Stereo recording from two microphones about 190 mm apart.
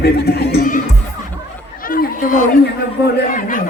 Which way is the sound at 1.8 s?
50° left (ahead or behind).